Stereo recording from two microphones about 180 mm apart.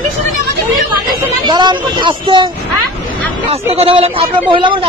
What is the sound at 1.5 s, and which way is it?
Speech, 25° right (ahead or behind).